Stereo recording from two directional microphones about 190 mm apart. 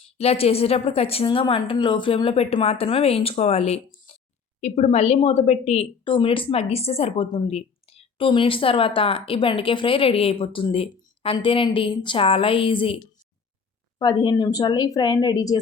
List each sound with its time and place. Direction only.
0.2 s a woman's voice: 30° left (ahead or behind)
14.0 s a woman's voice: 20° left (ahead or behind)